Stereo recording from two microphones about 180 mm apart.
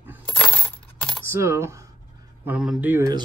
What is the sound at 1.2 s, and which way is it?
Speech, 15° right (ahead or behind).